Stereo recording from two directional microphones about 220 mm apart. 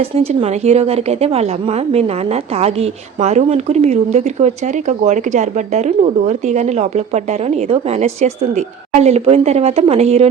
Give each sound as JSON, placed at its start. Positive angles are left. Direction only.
{"t": 0.0, "sound": "a woman's voice", "side_deg": -25}